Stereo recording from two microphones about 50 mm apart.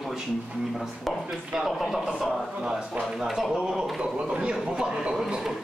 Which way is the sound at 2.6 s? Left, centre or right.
Centre.